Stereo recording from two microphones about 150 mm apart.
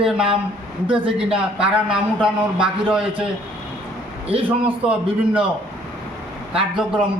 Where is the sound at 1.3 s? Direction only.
5° right (ahead or behind).